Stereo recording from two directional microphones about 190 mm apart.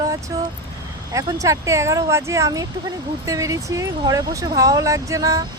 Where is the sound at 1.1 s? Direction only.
15° right (ahead or behind).